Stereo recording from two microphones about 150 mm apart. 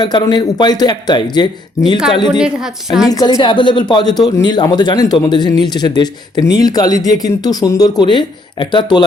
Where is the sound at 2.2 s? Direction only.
5° right (ahead or behind).